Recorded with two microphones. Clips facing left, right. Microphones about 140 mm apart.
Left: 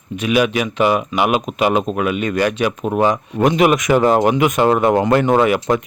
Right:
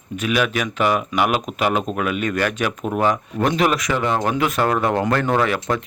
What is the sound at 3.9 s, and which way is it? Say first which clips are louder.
Speech: left 8 dB; 40° left (ahead or behind).